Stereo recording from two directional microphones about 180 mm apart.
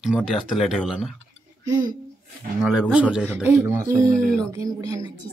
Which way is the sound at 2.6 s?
Centre (ahead or behind).